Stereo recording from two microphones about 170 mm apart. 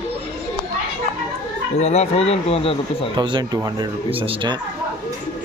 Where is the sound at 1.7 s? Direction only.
40° left (ahead or behind).